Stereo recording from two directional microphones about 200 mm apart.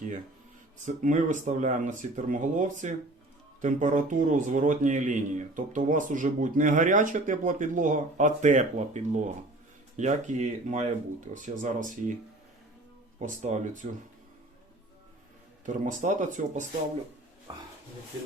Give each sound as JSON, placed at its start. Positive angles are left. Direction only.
{"t": 0.9, "sound": "speech", "side_deg": -40}
{"t": 13.1, "sound": "speech", "side_deg": -35}
{"t": 15.6, "sound": "speech", "side_deg": -40}